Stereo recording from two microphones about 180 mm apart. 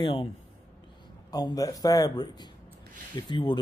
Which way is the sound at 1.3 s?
20° left (ahead or behind).